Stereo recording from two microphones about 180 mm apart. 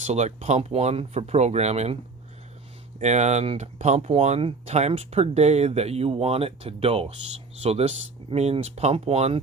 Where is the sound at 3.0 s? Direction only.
40° right (ahead or behind).